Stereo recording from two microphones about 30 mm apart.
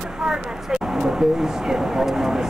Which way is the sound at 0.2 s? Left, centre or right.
Centre.